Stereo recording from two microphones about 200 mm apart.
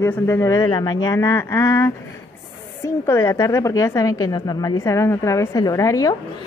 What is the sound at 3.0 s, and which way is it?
A woman's voice, 15° left (ahead or behind).